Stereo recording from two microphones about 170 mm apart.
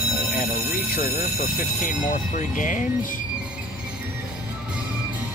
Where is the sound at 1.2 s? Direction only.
55° left (ahead or behind).